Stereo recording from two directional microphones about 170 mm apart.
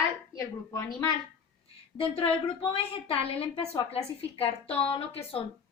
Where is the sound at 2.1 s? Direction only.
30° left (ahead or behind).